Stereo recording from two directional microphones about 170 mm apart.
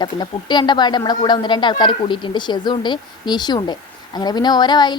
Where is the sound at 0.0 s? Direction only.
25° left (ahead or behind).